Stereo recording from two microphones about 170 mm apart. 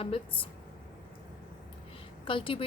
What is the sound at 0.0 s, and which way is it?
Speech, 30° left (ahead or behind).